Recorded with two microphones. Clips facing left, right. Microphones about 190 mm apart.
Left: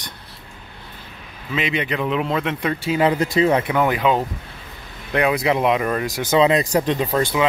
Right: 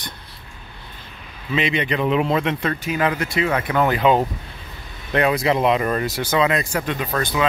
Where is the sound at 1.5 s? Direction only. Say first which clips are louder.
Right 2 dB; 5° left (ahead or behind).